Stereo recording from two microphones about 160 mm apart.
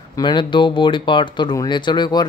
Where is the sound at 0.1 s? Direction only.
30° left (ahead or behind).